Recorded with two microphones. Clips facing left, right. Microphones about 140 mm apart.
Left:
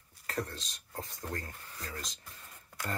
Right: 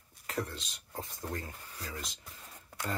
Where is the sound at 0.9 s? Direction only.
15° right (ahead or behind).